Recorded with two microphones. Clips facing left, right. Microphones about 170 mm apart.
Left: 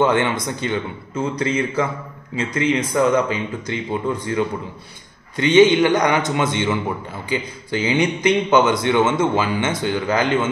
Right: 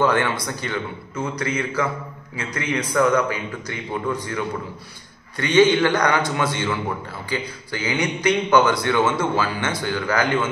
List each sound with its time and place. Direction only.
0.0 s a man's voice: 25° left (ahead or behind)